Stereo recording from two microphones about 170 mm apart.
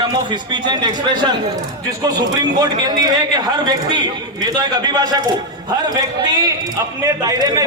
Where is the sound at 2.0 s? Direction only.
25° right (ahead or behind).